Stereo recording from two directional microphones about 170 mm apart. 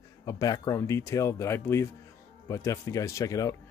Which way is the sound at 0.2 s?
20° left (ahead or behind).